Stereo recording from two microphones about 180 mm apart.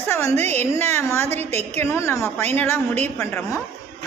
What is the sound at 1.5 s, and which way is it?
Speech, 35° right (ahead or behind).